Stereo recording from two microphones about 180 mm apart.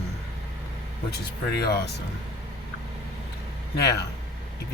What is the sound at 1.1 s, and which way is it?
Speech, 65° left (ahead or behind).